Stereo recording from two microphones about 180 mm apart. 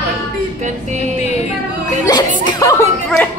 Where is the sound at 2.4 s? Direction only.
20° left (ahead or behind).